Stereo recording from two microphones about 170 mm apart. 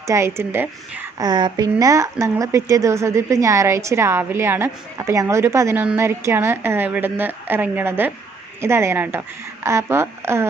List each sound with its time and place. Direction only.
0.1 s a woman's voice: 15° right (ahead or behind)
1.2 s a woman's voice: 25° right (ahead or behind)